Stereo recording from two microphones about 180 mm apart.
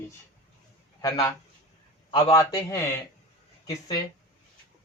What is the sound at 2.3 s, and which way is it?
A man's voice, 15° left (ahead or behind).